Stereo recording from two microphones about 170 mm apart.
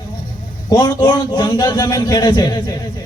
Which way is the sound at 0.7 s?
25° left (ahead or behind).